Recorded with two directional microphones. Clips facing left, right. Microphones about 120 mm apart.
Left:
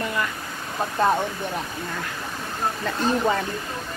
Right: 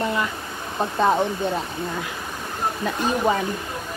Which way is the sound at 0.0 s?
20° right (ahead or behind).